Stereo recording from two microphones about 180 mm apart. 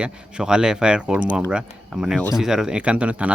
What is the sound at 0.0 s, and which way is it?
Speech, 5° right (ahead or behind).